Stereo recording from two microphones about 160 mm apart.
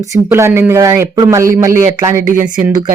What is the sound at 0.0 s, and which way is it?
Speech, 20° right (ahead or behind).